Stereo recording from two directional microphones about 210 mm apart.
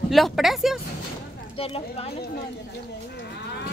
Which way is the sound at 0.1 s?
Centre (ahead or behind).